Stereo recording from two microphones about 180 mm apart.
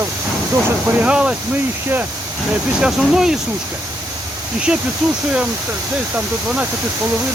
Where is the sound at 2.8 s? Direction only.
5° right (ahead or behind).